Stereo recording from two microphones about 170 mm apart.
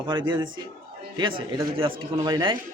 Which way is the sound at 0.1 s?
25° right (ahead or behind).